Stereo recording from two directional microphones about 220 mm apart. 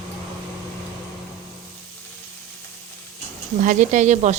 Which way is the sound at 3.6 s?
35° right (ahead or behind).